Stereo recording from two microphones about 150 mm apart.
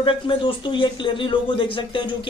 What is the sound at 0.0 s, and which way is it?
Speech, 35° left (ahead or behind).